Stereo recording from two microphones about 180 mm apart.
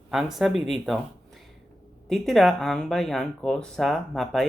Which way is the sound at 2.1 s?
Centre (ahead or behind).